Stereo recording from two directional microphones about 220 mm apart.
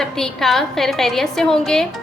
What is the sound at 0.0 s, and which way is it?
A woman's voice, centre (ahead or behind).